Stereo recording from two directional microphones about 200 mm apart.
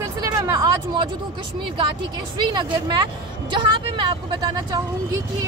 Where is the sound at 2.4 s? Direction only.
25° right (ahead or behind).